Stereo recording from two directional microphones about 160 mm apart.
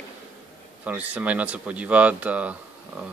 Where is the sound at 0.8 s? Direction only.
10° right (ahead or behind).